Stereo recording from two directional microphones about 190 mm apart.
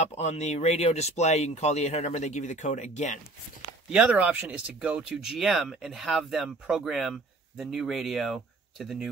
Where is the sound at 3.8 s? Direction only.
5° right (ahead or behind).